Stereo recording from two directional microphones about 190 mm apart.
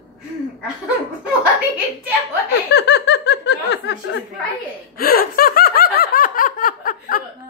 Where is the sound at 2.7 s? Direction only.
60° left (ahead or behind).